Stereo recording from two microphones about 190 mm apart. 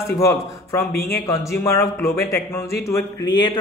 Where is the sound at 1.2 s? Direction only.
15° left (ahead or behind).